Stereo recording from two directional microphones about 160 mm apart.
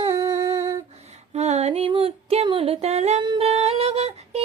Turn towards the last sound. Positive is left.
turn(degrees=-40)  # may be behind; listen again after turning